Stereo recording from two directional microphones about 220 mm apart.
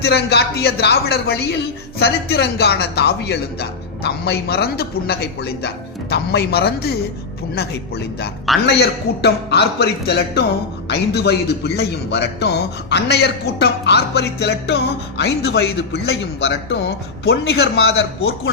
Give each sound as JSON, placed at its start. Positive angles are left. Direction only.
{"t": 0.0, "sound": "speech", "side_deg": 50}